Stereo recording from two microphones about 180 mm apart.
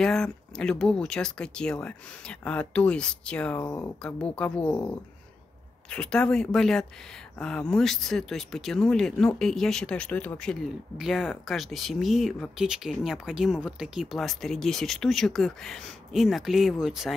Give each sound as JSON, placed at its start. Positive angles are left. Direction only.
{"t": 0.0, "sound": "speech", "side_deg": 5}
{"t": 3.6, "sound": "speech", "side_deg": 15}
{"t": 4.0, "sound": "speech", "side_deg": 5}
{"t": 5.9, "sound": "speech", "side_deg": 5}